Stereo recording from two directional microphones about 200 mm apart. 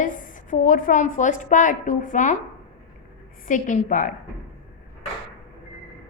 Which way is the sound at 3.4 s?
40° left (ahead or behind).